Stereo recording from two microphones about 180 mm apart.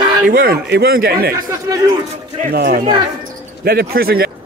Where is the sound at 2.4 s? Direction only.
55° right (ahead or behind).